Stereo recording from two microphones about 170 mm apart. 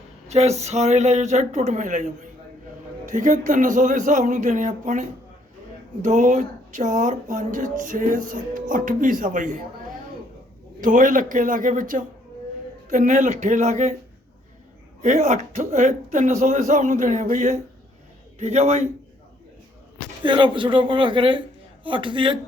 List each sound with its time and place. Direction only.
0.3 s speech: 40° right (ahead or behind)
10.8 s speech: 50° right (ahead or behind)
15.0 s a man's voice: 40° right (ahead or behind)
20.2 s speech: 30° right (ahead or behind)